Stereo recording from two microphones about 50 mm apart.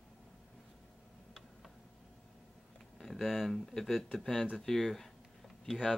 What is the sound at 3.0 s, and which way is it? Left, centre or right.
Speech, centre.